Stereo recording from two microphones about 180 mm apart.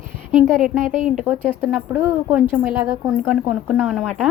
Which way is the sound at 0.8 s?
45° right (ahead or behind).